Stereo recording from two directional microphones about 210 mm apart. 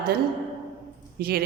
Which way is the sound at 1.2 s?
45° right (ahead or behind).